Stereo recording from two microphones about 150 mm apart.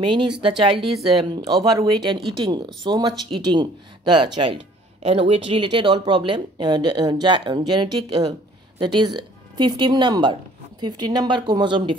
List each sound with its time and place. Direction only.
0.1 s speech: 35° right (ahead or behind)